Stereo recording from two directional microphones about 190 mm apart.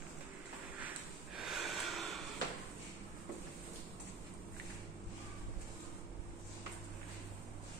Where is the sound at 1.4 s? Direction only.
Centre (ahead or behind).